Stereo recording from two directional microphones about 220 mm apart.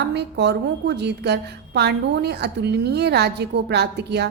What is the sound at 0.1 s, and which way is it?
A woman's voice, 50° right (ahead or behind).